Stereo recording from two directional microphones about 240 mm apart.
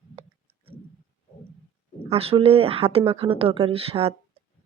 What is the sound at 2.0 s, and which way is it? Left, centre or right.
Speech, right.